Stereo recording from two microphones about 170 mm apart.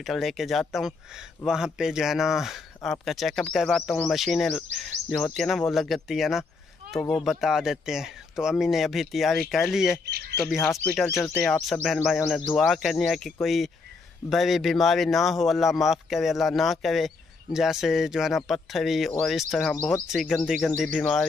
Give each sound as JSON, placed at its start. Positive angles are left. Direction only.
{"t": 0.0, "sound": "speech", "side_deg": 0}
{"t": 10.0, "sound": "speech", "side_deg": -70}
{"t": 10.5, "sound": "speech", "side_deg": 0}
{"t": 11.1, "sound": "speech", "side_deg": 10}